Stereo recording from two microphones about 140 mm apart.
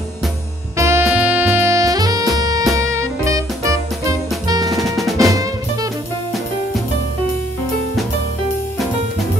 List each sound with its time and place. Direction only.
0.7 s saxophone: 20° right (ahead or behind)
2.3 s music: 25° right (ahead or behind)
4.8 s drum: centre (ahead or behind)
5.1 s drum kit: 25° right (ahead or behind)